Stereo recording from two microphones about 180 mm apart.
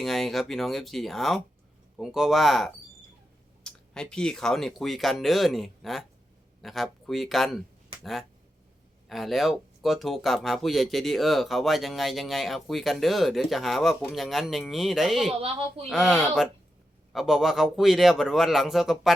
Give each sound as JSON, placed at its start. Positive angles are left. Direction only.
{"t": 0.0, "sound": "speech", "side_deg": 0}
{"t": 9.0, "sound": "speech", "side_deg": 0}
{"t": 15.3, "sound": "speech", "side_deg": -30}
{"t": 15.9, "sound": "speech", "side_deg": 0}